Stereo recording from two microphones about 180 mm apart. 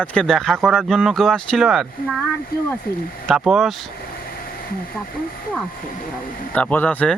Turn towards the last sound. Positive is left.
turn(degrees=10)  # may be behind; listen again after turning